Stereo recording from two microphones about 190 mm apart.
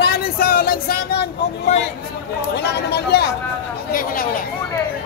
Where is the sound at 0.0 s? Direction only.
55° left (ahead or behind).